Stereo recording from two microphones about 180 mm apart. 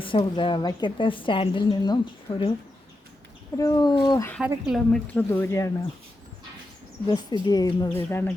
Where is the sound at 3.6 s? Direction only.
20° left (ahead or behind).